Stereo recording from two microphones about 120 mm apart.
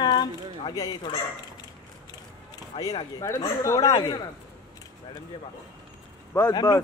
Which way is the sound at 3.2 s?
30° left (ahead or behind).